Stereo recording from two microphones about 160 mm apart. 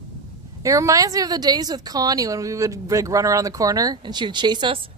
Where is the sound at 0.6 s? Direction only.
20° right (ahead or behind).